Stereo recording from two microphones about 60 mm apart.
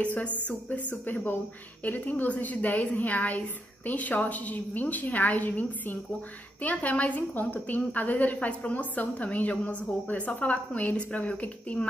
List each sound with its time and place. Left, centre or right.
0.0 s a woman's voice: left